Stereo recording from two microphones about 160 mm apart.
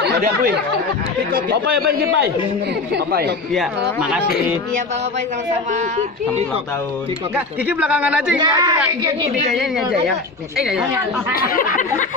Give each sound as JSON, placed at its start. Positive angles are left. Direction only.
{"t": 0.0, "sound": "a man's voice", "side_deg": -80}
{"t": 3.5, "sound": "speech", "side_deg": -5}
{"t": 5.7, "sound": "speech", "side_deg": -45}
{"t": 7.3, "sound": "speech", "side_deg": -10}
{"t": 8.4, "sound": "speech", "side_deg": -25}
{"t": 9.6, "sound": "speech", "side_deg": 0}
{"t": 11.3, "sound": "speech", "side_deg": 55}